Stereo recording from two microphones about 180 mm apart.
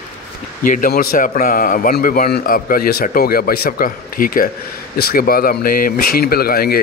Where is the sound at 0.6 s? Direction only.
50° left (ahead or behind).